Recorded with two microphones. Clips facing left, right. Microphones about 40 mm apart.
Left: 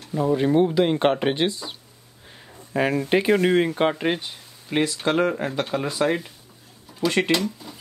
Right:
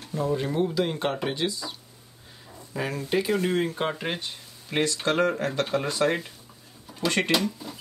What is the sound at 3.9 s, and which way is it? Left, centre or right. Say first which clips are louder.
Speech: left 6 dB; centre.